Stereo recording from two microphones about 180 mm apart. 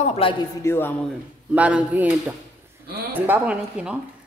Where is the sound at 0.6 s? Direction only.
15° left (ahead or behind).